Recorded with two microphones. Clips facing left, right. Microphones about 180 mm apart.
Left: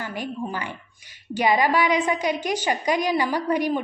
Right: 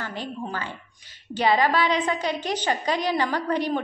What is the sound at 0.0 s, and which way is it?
A woman's voice, 10° left (ahead or behind).